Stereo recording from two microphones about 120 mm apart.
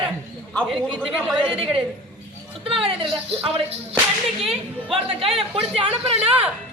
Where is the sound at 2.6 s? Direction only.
50° right (ahead or behind).